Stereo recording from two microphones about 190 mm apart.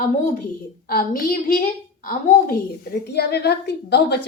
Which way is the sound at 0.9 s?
50° left (ahead or behind).